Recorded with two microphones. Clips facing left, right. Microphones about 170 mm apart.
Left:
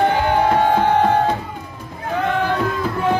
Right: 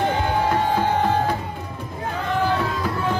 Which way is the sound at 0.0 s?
65° left (ahead or behind).